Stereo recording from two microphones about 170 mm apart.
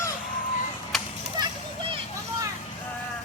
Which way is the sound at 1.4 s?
30° right (ahead or behind).